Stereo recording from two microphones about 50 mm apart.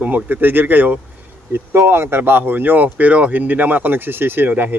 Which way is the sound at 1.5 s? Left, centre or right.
Right.